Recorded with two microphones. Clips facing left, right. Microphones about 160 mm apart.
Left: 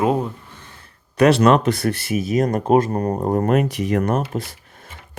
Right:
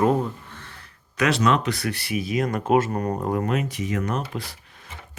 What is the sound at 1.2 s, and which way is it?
Speech, 60° left (ahead or behind).